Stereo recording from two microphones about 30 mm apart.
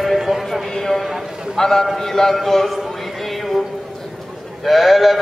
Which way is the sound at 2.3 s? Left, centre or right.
Centre.